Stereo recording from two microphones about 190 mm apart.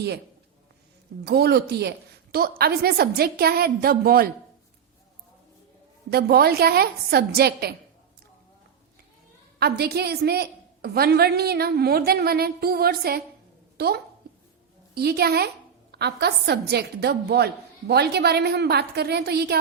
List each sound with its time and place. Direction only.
1.2 s a woman's voice: 60° right (ahead or behind)
6.1 s a woman's voice: 55° right (ahead or behind)
9.6 s a woman's voice: 60° right (ahead or behind)